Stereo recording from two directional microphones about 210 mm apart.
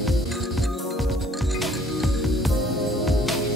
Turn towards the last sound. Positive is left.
turn(degrees=0)  # may be behind; listen again after turning